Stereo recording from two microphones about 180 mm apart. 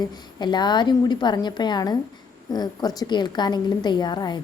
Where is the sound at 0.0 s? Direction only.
25° left (ahead or behind).